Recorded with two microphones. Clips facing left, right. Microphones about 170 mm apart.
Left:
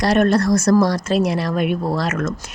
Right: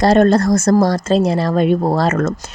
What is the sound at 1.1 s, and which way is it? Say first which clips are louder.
Speech: right 4 dB; 30° right (ahead or behind).